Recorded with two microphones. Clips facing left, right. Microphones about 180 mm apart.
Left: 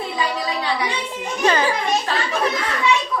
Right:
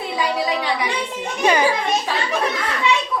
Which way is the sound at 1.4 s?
15° right (ahead or behind).